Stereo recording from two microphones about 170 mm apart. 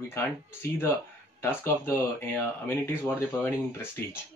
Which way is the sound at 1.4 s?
10° left (ahead or behind).